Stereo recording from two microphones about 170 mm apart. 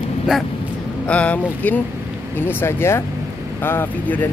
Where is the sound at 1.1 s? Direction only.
5° left (ahead or behind).